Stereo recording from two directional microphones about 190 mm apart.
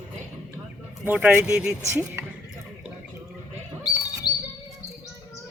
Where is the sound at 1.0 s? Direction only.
10° right (ahead or behind).